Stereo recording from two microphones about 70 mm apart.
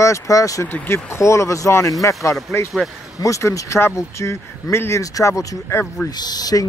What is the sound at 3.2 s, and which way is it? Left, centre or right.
Speech, left.